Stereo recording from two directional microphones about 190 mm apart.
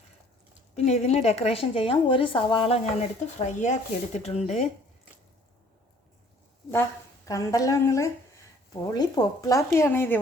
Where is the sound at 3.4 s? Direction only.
40° left (ahead or behind).